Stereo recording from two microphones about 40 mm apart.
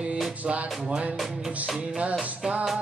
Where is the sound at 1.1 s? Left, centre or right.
Centre.